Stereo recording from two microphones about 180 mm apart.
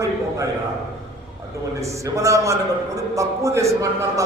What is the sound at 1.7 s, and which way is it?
A man's voice, 15° right (ahead or behind).